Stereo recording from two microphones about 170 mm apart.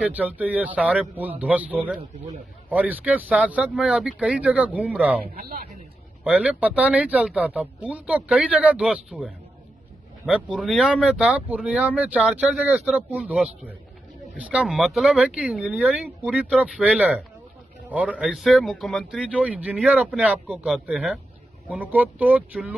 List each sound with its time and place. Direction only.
0.0 s speech: 10° right (ahead or behind)
5.3 s speech: 55° right (ahead or behind)
6.2 s a man's voice: 5° right (ahead or behind)